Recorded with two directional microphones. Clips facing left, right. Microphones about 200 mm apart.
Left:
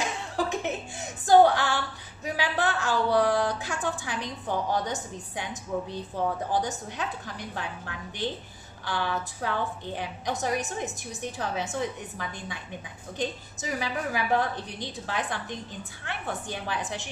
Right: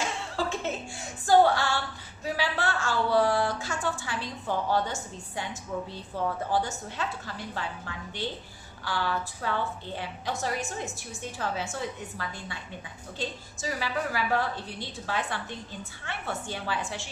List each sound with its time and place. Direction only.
0.0 s a woman's voice: 15° left (ahead or behind)
8.8 s a woman's voice: 20° left (ahead or behind)